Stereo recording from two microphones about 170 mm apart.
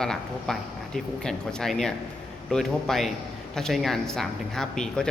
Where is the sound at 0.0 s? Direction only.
5° left (ahead or behind).